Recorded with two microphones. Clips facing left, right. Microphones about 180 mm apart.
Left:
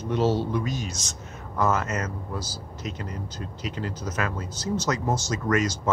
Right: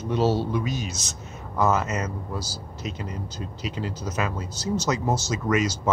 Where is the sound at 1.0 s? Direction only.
5° right (ahead or behind).